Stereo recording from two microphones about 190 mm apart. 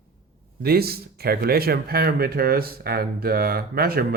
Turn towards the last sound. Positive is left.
turn(degrees=-50)  # may be behind; listen again after turning